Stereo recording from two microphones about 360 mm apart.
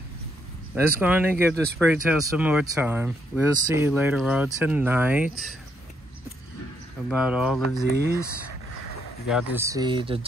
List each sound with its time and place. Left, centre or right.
0.7 s speech: centre
7.1 s speech: centre
9.3 s speech: centre